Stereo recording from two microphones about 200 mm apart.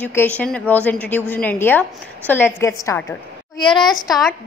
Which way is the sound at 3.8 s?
Centre (ahead or behind).